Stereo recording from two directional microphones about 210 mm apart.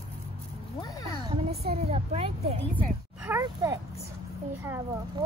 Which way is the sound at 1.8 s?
30° right (ahead or behind).